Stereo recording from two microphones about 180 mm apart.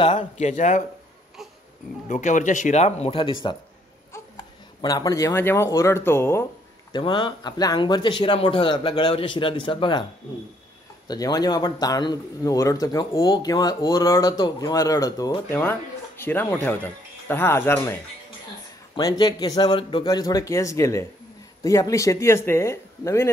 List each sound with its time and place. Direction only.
0.0 s a man's voice: 25° left (ahead or behind)
0.4 s speech: 40° left (ahead or behind)
2.0 s speech: 45° left (ahead or behind)
4.8 s speech: 20° left (ahead or behind)
6.9 s a man's voice: 25° left (ahead or behind)
11.1 s a man's voice: 20° left (ahead or behind)
18.9 s a man's voice: 20° left (ahead or behind)